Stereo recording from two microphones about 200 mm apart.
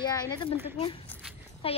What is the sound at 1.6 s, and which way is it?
Speech, 30° left (ahead or behind).